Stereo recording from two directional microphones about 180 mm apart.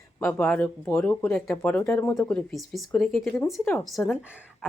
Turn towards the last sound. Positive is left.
turn(degrees=0)  # may be behind; listen again after turning